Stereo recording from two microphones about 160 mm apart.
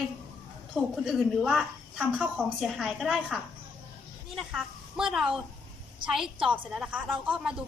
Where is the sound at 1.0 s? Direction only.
Centre (ahead or behind).